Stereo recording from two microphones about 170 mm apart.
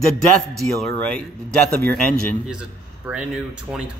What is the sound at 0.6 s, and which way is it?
Speech, 5° left (ahead or behind).